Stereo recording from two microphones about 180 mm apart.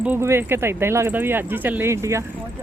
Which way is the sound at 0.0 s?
10° right (ahead or behind).